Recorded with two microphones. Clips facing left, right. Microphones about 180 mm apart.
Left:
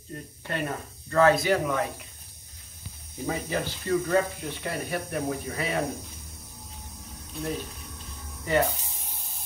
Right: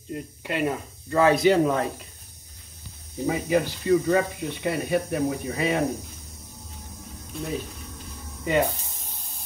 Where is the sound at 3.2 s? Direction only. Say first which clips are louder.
Right 6 dB; 15° right (ahead or behind).